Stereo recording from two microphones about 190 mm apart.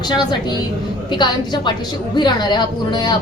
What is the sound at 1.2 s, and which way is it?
A woman's voice, 25° left (ahead or behind).